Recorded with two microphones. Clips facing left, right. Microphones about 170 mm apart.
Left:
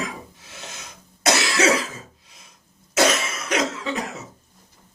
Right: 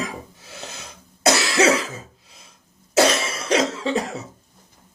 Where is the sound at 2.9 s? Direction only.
30° right (ahead or behind).